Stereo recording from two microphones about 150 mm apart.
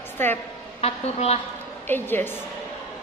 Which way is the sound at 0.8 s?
45° left (ahead or behind).